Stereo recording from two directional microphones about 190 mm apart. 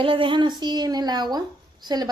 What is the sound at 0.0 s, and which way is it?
A woman's voice, 25° right (ahead or behind).